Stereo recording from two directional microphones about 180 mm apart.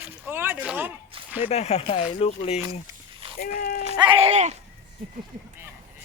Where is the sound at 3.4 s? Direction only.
55° left (ahead or behind).